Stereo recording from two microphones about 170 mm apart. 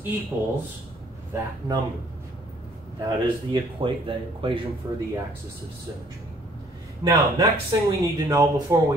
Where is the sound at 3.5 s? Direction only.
30° right (ahead or behind).